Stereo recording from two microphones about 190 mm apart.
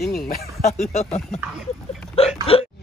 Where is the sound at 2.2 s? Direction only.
30° left (ahead or behind).